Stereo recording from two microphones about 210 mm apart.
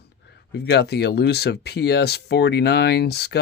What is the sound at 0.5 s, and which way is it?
Speech, 50° left (ahead or behind).